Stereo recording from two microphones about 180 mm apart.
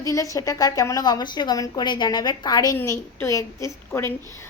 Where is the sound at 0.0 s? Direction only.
20° left (ahead or behind).